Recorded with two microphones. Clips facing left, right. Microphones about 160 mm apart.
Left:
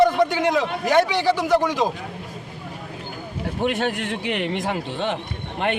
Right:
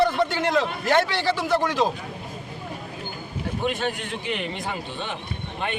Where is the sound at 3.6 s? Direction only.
75° left (ahead or behind).